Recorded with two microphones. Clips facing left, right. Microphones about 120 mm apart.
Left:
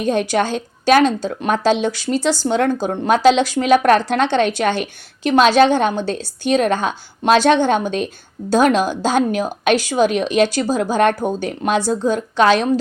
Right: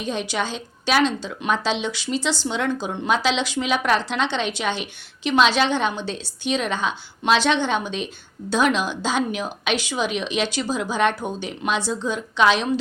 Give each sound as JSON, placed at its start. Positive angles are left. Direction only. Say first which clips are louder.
{"t": 0.0, "sound": "a woman's voice", "louder": "left 8 dB", "side_deg": 50}